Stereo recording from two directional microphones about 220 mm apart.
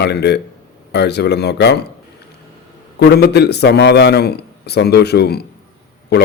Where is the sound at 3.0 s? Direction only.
45° left (ahead or behind).